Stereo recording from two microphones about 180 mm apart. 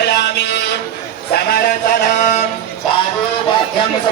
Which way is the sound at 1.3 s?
55° left (ahead or behind).